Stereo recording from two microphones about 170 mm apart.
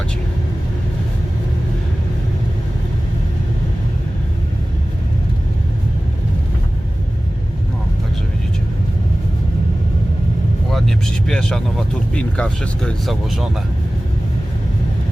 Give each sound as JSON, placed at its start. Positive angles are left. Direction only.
{"t": 10.7, "sound": "vehicle", "side_deg": 0}
{"t": 12.1, "sound": "speech", "side_deg": 5}